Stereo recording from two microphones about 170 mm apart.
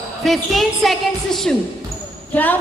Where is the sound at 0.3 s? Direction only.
Centre (ahead or behind).